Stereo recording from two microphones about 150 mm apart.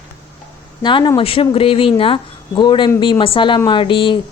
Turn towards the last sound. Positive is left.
turn(degrees=35)  # may be behind; listen again after turning